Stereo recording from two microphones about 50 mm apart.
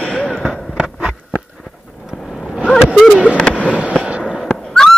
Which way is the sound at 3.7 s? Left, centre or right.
Right.